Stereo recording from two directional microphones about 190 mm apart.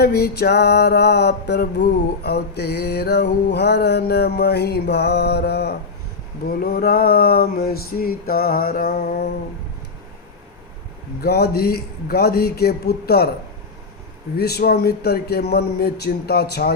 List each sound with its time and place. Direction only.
0.0 s mantra: 55° left (ahead or behind)
6.6 s a sound: 55° left (ahead or behind)
11.2 s mantra: 55° left (ahead or behind)
14.3 s mantra: 55° left (ahead or behind)